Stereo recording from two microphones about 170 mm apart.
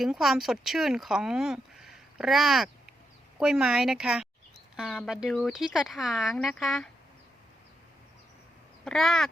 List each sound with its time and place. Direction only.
0.0 s speech: centre (ahead or behind)
8.8 s speech: centre (ahead or behind)